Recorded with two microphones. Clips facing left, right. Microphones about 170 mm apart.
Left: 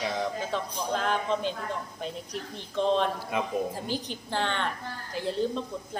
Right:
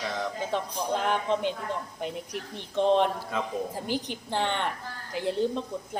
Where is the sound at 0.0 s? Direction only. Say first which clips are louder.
Left 2 dB; 15° left (ahead or behind).